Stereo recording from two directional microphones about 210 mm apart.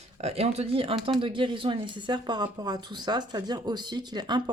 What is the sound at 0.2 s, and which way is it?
Speech, 30° right (ahead or behind).